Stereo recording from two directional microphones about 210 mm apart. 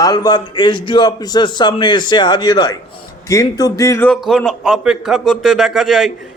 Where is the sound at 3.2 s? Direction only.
15° left (ahead or behind).